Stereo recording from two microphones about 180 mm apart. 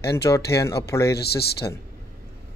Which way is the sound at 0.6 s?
15° left (ahead or behind).